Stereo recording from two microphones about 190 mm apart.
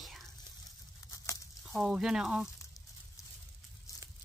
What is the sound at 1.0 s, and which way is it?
Tearing, 15° left (ahead or behind).